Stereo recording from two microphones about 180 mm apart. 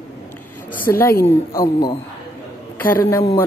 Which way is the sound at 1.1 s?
55° left (ahead or behind).